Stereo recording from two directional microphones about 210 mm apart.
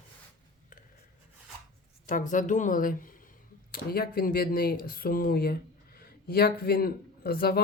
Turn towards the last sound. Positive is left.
turn(degrees=45)  # may be behind; listen again after turning